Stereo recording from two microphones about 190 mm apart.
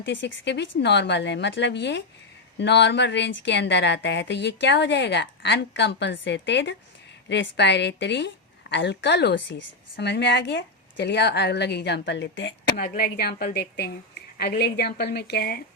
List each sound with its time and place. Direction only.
0.0 s speech: 70° left (ahead or behind)
12.7 s speech: 50° left (ahead or behind)